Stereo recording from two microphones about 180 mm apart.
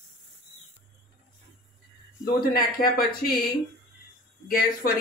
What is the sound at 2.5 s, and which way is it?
Speech, 55° left (ahead or behind).